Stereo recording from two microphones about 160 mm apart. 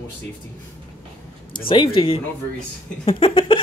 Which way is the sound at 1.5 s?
30° left (ahead or behind).